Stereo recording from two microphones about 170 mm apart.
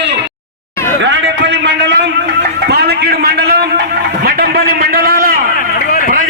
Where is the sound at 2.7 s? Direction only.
70° right (ahead or behind).